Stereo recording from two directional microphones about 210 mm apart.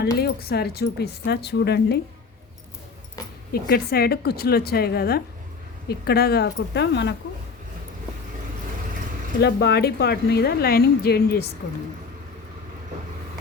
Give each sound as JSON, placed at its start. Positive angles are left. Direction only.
{"t": 0.0, "sound": "speech", "side_deg": 50}
{"t": 3.5, "sound": "speech", "side_deg": 45}
{"t": 9.4, "sound": "speech", "side_deg": 50}